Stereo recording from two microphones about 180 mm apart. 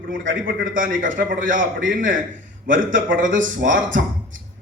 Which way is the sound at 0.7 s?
50° right (ahead or behind).